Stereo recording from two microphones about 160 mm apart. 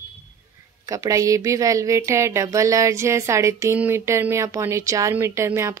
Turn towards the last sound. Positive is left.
turn(degrees=-15)  # may be behind; listen again after turning